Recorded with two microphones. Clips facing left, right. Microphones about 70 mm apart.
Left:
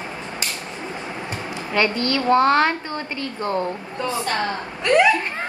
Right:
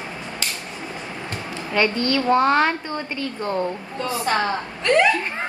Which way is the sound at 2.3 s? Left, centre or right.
Centre.